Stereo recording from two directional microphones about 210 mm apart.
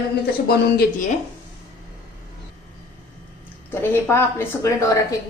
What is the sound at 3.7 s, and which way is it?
A woman's voice, 10° left (ahead or behind).